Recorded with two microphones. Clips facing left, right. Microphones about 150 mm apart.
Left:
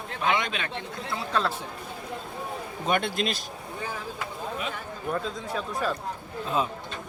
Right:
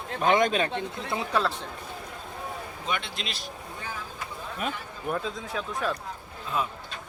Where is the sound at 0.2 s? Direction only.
45° right (ahead or behind).